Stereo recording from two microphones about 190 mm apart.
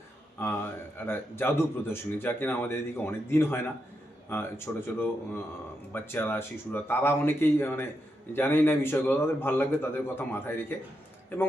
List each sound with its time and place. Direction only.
0.9 s speech: 10° left (ahead or behind)